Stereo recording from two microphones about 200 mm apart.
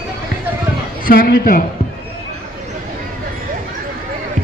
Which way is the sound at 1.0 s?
45° left (ahead or behind).